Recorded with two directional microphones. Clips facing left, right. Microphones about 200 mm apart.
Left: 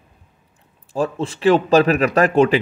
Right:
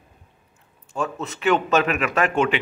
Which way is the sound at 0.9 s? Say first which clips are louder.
Left 6 dB; 30° left (ahead or behind).